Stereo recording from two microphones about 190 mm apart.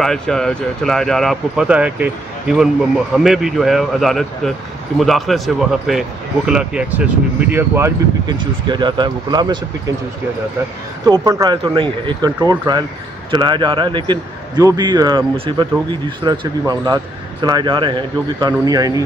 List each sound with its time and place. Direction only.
0.0 s speech: centre (ahead or behind)
8.4 s a man's voice: 25° right (ahead or behind)
11.1 s a man's voice: 20° right (ahead or behind)